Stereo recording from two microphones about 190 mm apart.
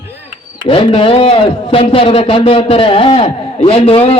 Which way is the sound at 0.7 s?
25° left (ahead or behind).